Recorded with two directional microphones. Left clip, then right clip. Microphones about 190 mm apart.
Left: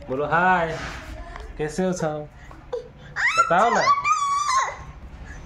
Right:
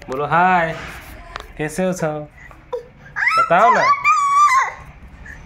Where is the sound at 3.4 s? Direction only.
40° right (ahead or behind).